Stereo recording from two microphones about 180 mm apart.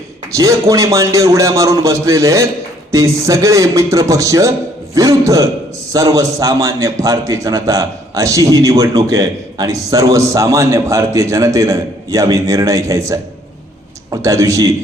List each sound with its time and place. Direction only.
0.3 s a man's voice: 15° right (ahead or behind)